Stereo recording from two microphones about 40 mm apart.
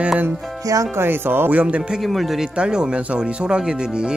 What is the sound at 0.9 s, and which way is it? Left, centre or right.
Speech, right.